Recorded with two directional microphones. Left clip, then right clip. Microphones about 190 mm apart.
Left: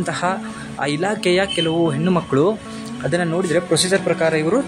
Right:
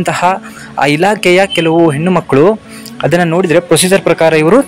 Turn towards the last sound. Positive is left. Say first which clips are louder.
# right 10 dB
turn(degrees=-45)  # may be behind; listen again after turning